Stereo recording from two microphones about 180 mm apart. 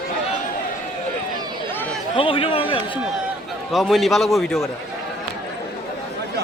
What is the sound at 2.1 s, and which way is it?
Speech, 30° left (ahead or behind).